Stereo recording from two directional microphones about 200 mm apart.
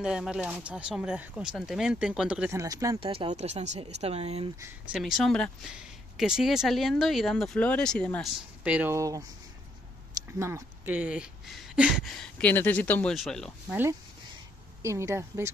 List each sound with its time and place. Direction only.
0.0 s speech: 5° right (ahead or behind)
2.6 s speech: 15° right (ahead or behind)
3.0 s speech: 30° right (ahead or behind)
4.9 s speech: centre (ahead or behind)
14.8 s speech: 15° right (ahead or behind)